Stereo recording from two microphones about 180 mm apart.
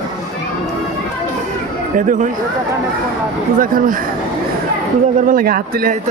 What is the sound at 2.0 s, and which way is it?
Speech, 45° right (ahead or behind).